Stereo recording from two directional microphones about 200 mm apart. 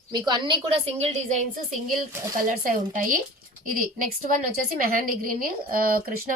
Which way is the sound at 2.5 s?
45° right (ahead or behind).